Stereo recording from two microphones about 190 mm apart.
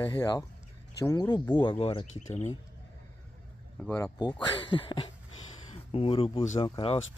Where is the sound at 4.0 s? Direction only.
20° left (ahead or behind).